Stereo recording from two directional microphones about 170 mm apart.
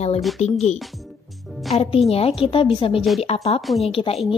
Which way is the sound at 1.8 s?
35° left (ahead or behind).